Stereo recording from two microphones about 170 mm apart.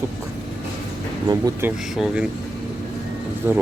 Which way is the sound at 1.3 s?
20° right (ahead or behind).